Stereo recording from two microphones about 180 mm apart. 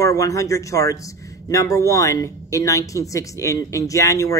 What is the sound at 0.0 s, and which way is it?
Speech, 20° left (ahead or behind).